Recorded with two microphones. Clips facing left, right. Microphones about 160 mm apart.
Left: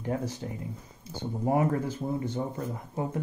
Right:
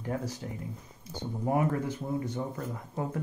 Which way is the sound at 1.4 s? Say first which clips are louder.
Left 2 dB; 25° left (ahead or behind).